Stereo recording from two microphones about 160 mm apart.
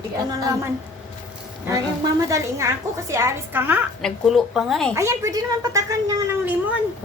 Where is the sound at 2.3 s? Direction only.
20° right (ahead or behind).